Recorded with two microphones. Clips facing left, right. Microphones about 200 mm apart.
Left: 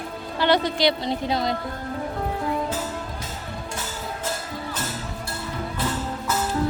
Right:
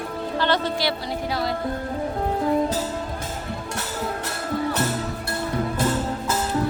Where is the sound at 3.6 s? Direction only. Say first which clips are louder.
Right 4 dB; 65° right (ahead or behind).